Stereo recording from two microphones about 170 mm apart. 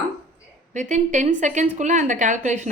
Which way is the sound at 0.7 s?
45° right (ahead or behind).